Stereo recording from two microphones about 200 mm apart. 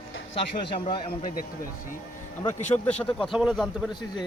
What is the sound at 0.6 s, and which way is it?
Speech, 25° left (ahead or behind).